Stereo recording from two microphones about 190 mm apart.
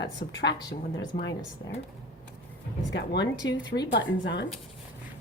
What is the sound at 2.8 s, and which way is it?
A woman's voice, 65° left (ahead or behind).